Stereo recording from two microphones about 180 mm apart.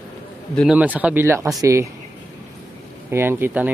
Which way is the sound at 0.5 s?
5° right (ahead or behind).